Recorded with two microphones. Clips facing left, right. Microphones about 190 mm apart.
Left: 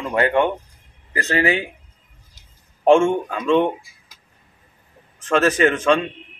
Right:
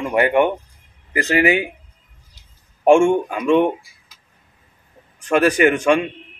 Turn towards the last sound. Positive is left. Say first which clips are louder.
# right 2 dB
turn(degrees=-10)  # may be behind; listen again after turning